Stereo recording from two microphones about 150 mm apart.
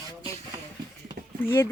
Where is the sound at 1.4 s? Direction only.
15° left (ahead or behind).